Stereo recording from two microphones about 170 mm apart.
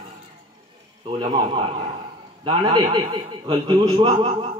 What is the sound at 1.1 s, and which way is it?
A man's voice, 30° right (ahead or behind).